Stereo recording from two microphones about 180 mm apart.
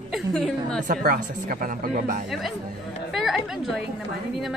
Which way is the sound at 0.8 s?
55° right (ahead or behind).